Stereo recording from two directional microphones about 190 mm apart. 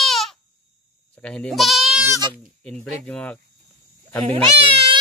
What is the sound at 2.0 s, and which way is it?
Speech, 20° right (ahead or behind).